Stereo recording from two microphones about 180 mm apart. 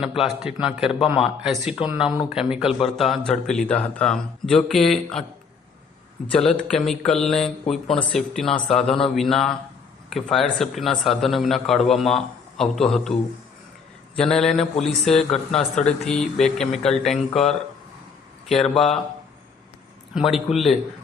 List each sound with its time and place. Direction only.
0.0 s a man's voice: centre (ahead or behind)
6.2 s a man's voice: 5° left (ahead or behind)
14.2 s a man's voice: 5° left (ahead or behind)
20.1 s a man's voice: centre (ahead or behind)